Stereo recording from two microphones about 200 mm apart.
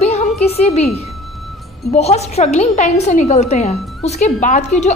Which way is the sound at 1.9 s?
30° left (ahead or behind).